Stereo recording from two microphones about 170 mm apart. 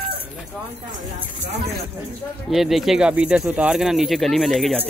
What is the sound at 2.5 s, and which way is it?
Speech, centre (ahead or behind).